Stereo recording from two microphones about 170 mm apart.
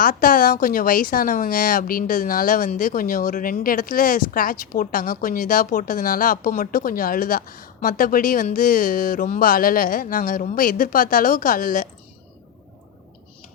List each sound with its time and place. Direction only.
0.0 s speech: 55° left (ahead or behind)